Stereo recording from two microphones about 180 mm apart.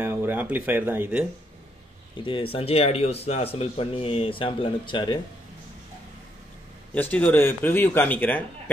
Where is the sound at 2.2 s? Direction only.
30° left (ahead or behind).